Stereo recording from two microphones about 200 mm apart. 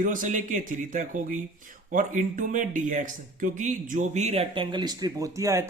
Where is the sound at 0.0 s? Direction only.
40° right (ahead or behind).